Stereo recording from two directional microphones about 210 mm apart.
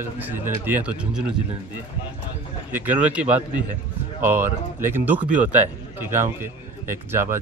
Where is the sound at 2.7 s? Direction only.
10° right (ahead or behind).